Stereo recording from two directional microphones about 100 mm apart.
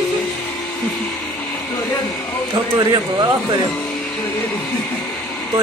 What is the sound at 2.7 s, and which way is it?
Speech, 40° right (ahead or behind).